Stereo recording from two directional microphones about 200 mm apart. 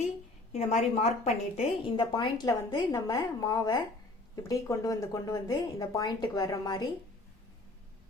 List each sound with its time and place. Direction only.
0.5 s a woman's voice: 30° left (ahead or behind)